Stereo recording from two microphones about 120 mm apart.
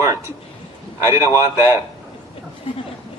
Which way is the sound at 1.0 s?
25° right (ahead or behind).